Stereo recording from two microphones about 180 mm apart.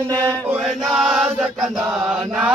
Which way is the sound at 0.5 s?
5° right (ahead or behind).